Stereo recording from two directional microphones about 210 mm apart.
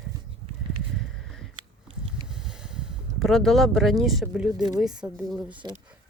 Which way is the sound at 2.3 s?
5° right (ahead or behind).